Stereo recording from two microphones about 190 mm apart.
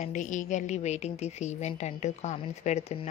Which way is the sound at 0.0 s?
40° left (ahead or behind).